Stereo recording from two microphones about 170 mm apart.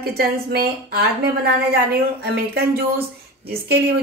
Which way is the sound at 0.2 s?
65° right (ahead or behind).